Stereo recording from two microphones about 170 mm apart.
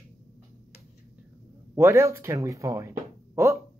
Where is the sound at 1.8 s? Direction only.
15° right (ahead or behind).